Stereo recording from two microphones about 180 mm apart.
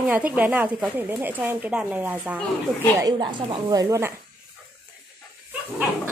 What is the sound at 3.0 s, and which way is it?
A woman's voice, 25° right (ahead or behind).